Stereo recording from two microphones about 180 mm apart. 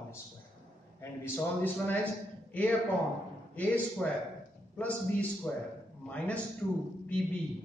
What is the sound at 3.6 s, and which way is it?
A man's voice, 5° left (ahead or behind).